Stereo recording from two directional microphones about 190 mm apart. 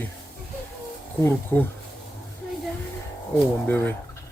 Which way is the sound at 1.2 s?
10° left (ahead or behind).